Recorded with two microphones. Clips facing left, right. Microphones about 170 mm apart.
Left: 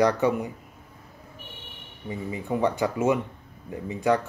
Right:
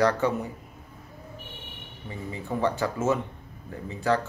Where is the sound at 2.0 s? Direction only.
15° left (ahead or behind).